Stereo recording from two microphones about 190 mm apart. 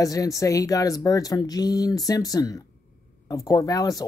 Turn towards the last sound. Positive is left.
turn(degrees=20)  # may be behind; listen again after turning